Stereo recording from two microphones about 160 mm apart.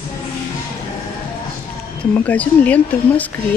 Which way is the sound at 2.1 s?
10° left (ahead or behind).